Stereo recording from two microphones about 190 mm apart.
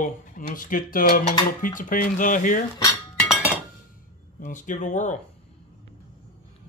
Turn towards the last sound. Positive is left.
turn(degrees=40)  # may be behind; listen again after turning